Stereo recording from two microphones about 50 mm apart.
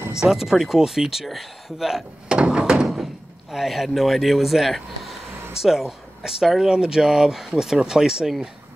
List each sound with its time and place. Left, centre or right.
0.2 s speech: centre
2.2 s thunk: centre
2.7 s thunk: centre
3.5 s speech: centre